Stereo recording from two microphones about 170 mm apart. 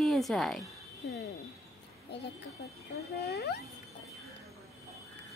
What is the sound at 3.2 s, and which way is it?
Speech, 70° left (ahead or behind).